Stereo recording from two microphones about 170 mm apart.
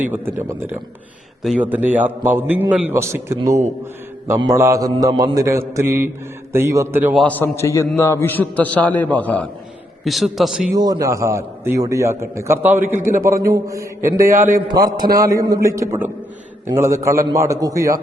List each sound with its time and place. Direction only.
0.0 s a man's voice: 10° right (ahead or behind)
7.1 s a man's voice: centre (ahead or behind)
7.3 s a man's voice: 15° left (ahead or behind); by 10.7 s centre (ahead or behind)
10.8 s a man's voice: 20° right (ahead or behind)